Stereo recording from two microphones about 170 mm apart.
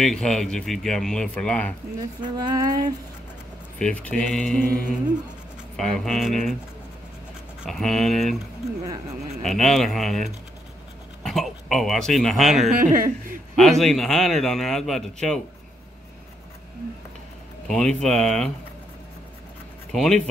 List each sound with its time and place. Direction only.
0.0 s a man's voice: 5° left (ahead or behind)
2.3 s speech: 20° right (ahead or behind)
3.7 s a man's voice: 5° left (ahead or behind)
5.8 s a man's voice: centre (ahead or behind)
7.6 s a man's voice: centre (ahead or behind)
9.4 s a man's voice: centre (ahead or behind)
12.8 s speech: 55° right (ahead or behind)
13.6 s a man's voice: centre (ahead or behind)
17.6 s a man's voice: 5° left (ahead or behind)
19.9 s speech: centre (ahead or behind)